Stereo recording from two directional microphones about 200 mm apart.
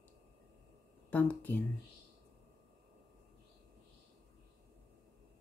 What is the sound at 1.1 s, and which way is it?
Speech, 10° left (ahead or behind).